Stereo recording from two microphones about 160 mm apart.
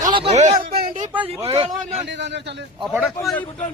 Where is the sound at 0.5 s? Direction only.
70° right (ahead or behind).